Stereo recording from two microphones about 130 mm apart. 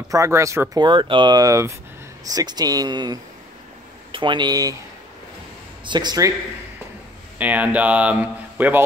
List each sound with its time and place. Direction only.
0.1 s speech: 25° right (ahead or behind)
0.8 s speech: 40° right (ahead or behind)
5.9 s speech: 35° right (ahead or behind)
7.3 s a man's voice: 10° right (ahead or behind)